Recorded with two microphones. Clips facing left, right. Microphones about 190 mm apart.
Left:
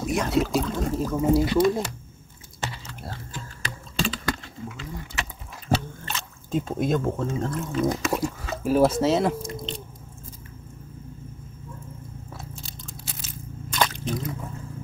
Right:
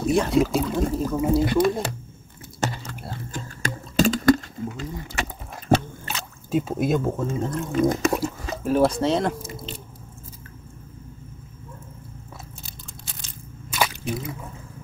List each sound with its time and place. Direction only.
0.3 s speech: centre (ahead or behind)
1.4 s speech: 55° right (ahead or behind)
2.6 s chewing: 45° right (ahead or behind)
3.3 s a sound: 45° right (ahead or behind)
5.1 s mechanisms: 55° right (ahead or behind)
6.0 s speech: 5° right (ahead or behind)
12.6 s crunch: 5° left (ahead or behind)
13.7 s squish: 10° right (ahead or behind)